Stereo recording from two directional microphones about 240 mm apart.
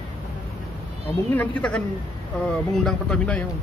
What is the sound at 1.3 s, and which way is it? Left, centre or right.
Speech, centre.